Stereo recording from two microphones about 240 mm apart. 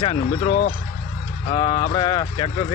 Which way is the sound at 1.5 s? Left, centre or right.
Centre.